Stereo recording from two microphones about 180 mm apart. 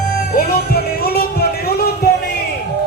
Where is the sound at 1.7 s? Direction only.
60° left (ahead or behind).